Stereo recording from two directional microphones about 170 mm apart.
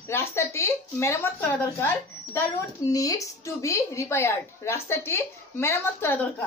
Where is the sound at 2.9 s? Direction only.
20° left (ahead or behind).